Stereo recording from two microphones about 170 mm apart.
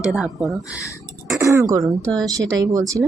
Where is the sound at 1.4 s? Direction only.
15° right (ahead or behind).